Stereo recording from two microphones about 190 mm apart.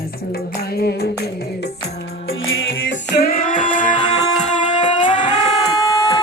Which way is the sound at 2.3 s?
90° left.